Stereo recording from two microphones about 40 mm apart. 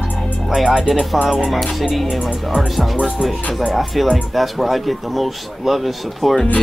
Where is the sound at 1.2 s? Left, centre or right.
Centre.